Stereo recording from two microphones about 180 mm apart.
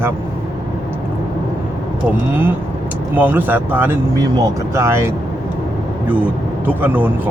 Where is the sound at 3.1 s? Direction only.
10° right (ahead or behind).